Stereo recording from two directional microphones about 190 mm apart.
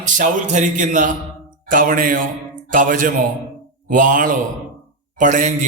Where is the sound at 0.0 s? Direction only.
40° right (ahead or behind).